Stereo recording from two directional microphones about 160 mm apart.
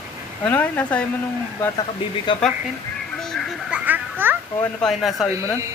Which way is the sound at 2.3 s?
30° left (ahead or behind).